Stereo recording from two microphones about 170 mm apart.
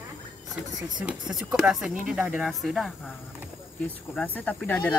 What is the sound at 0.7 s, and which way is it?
Speech, 5° right (ahead or behind).